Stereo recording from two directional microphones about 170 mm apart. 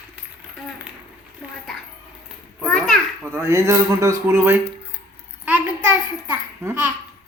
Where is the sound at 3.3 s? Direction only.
15° right (ahead or behind).